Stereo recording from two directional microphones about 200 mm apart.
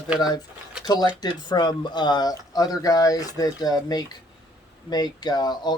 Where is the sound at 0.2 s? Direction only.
20° left (ahead or behind).